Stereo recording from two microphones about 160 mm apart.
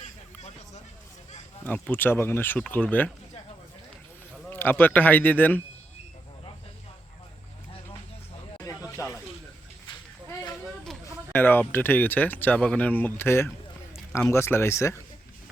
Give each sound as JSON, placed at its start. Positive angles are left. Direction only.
{"t": 1.6, "sound": "speech", "side_deg": 10}
{"t": 4.4, "sound": "speech", "side_deg": 10}
{"t": 8.6, "sound": "a sound", "side_deg": 20}
{"t": 11.0, "sound": "speech", "side_deg": 10}